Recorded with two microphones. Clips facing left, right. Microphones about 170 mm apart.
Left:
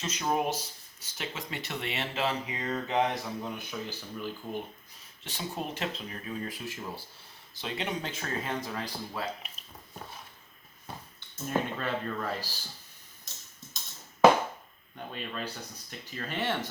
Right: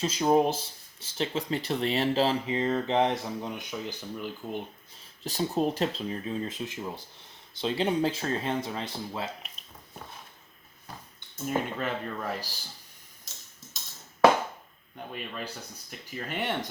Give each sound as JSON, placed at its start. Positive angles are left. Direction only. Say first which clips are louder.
{"t": 0.0, "sound": "speech", "louder": "right 7 dB", "side_deg": -30}
{"t": 3.7, "sound": "speech", "louder": "right 2 dB", "side_deg": -15}
{"t": 5.2, "sound": "speech", "louder": "right 9 dB", "side_deg": -40}
{"t": 7.6, "sound": "speech", "louder": "right 8 dB", "side_deg": -30}
{"t": 11.4, "sound": "speech", "louder": "right 1 dB", "side_deg": -10}
{"t": 14.9, "sound": "speech", "louder": "even", "side_deg": -10}